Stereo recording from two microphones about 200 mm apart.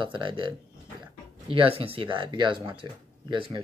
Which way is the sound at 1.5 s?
30° right (ahead or behind).